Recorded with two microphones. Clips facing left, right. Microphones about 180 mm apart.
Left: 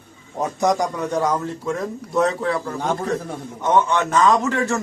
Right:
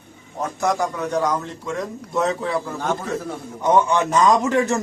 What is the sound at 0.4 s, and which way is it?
A man's voice, 15° left (ahead or behind).